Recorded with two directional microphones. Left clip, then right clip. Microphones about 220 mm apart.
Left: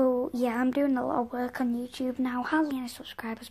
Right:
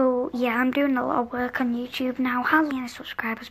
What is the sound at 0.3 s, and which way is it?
A woman's voice, 30° left (ahead or behind).